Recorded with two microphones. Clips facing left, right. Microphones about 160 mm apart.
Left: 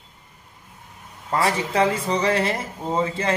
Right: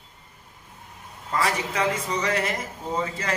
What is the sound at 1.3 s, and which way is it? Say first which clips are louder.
A man's voice: left 4 dB; 30° left (ahead or behind).